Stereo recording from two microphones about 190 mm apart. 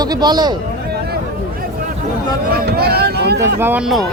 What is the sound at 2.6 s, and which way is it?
Speech, 55° right (ahead or behind).